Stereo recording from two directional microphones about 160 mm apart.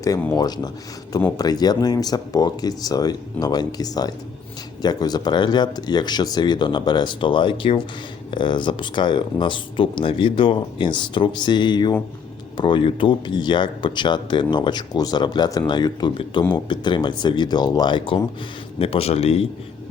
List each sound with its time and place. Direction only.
0.0 s a man's voice: 15° left (ahead or behind); by 19.5 s 40° left (ahead or behind)